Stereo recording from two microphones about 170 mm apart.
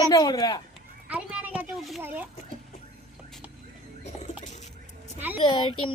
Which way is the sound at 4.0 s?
45° left (ahead or behind).